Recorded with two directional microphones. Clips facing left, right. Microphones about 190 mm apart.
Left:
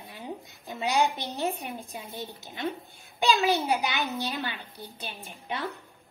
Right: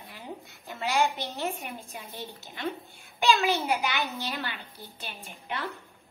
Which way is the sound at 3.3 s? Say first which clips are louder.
Left 2 dB; 20° left (ahead or behind).